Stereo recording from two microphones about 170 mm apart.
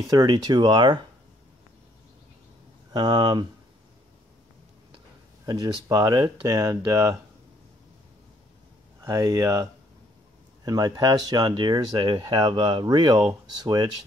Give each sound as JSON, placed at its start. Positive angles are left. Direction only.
{"t": 0.1, "sound": "speech", "side_deg": -20}
{"t": 2.9, "sound": "speech", "side_deg": -25}
{"t": 5.4, "sound": "speech", "side_deg": -20}
{"t": 9.0, "sound": "speech", "side_deg": -20}